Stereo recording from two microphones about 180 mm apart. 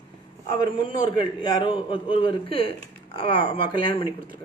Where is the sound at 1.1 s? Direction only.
25° left (ahead or behind).